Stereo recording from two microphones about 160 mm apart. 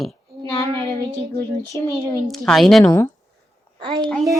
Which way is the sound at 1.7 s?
15° left (ahead or behind).